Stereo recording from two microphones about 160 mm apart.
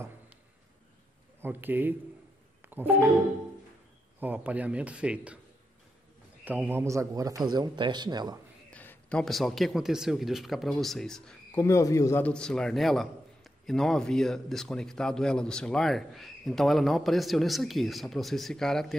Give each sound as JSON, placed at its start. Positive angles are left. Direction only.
{"t": 1.4, "sound": "a man's voice", "side_deg": -10}
{"t": 2.6, "sound": "music", "side_deg": -10}
{"t": 4.2, "sound": "a man's voice", "side_deg": -10}
{"t": 6.4, "sound": "speech", "side_deg": -10}
{"t": 8.6, "sound": "speech", "side_deg": 10}
{"t": 11.6, "sound": "a man's voice", "side_deg": 20}